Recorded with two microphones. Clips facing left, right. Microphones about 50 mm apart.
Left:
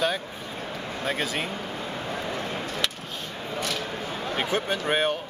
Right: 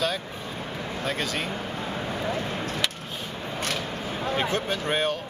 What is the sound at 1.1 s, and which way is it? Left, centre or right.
Speech, centre.